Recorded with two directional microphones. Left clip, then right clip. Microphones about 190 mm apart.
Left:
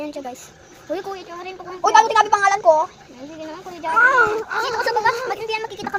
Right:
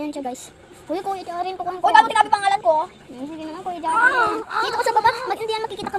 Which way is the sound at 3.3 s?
65° right (ahead or behind).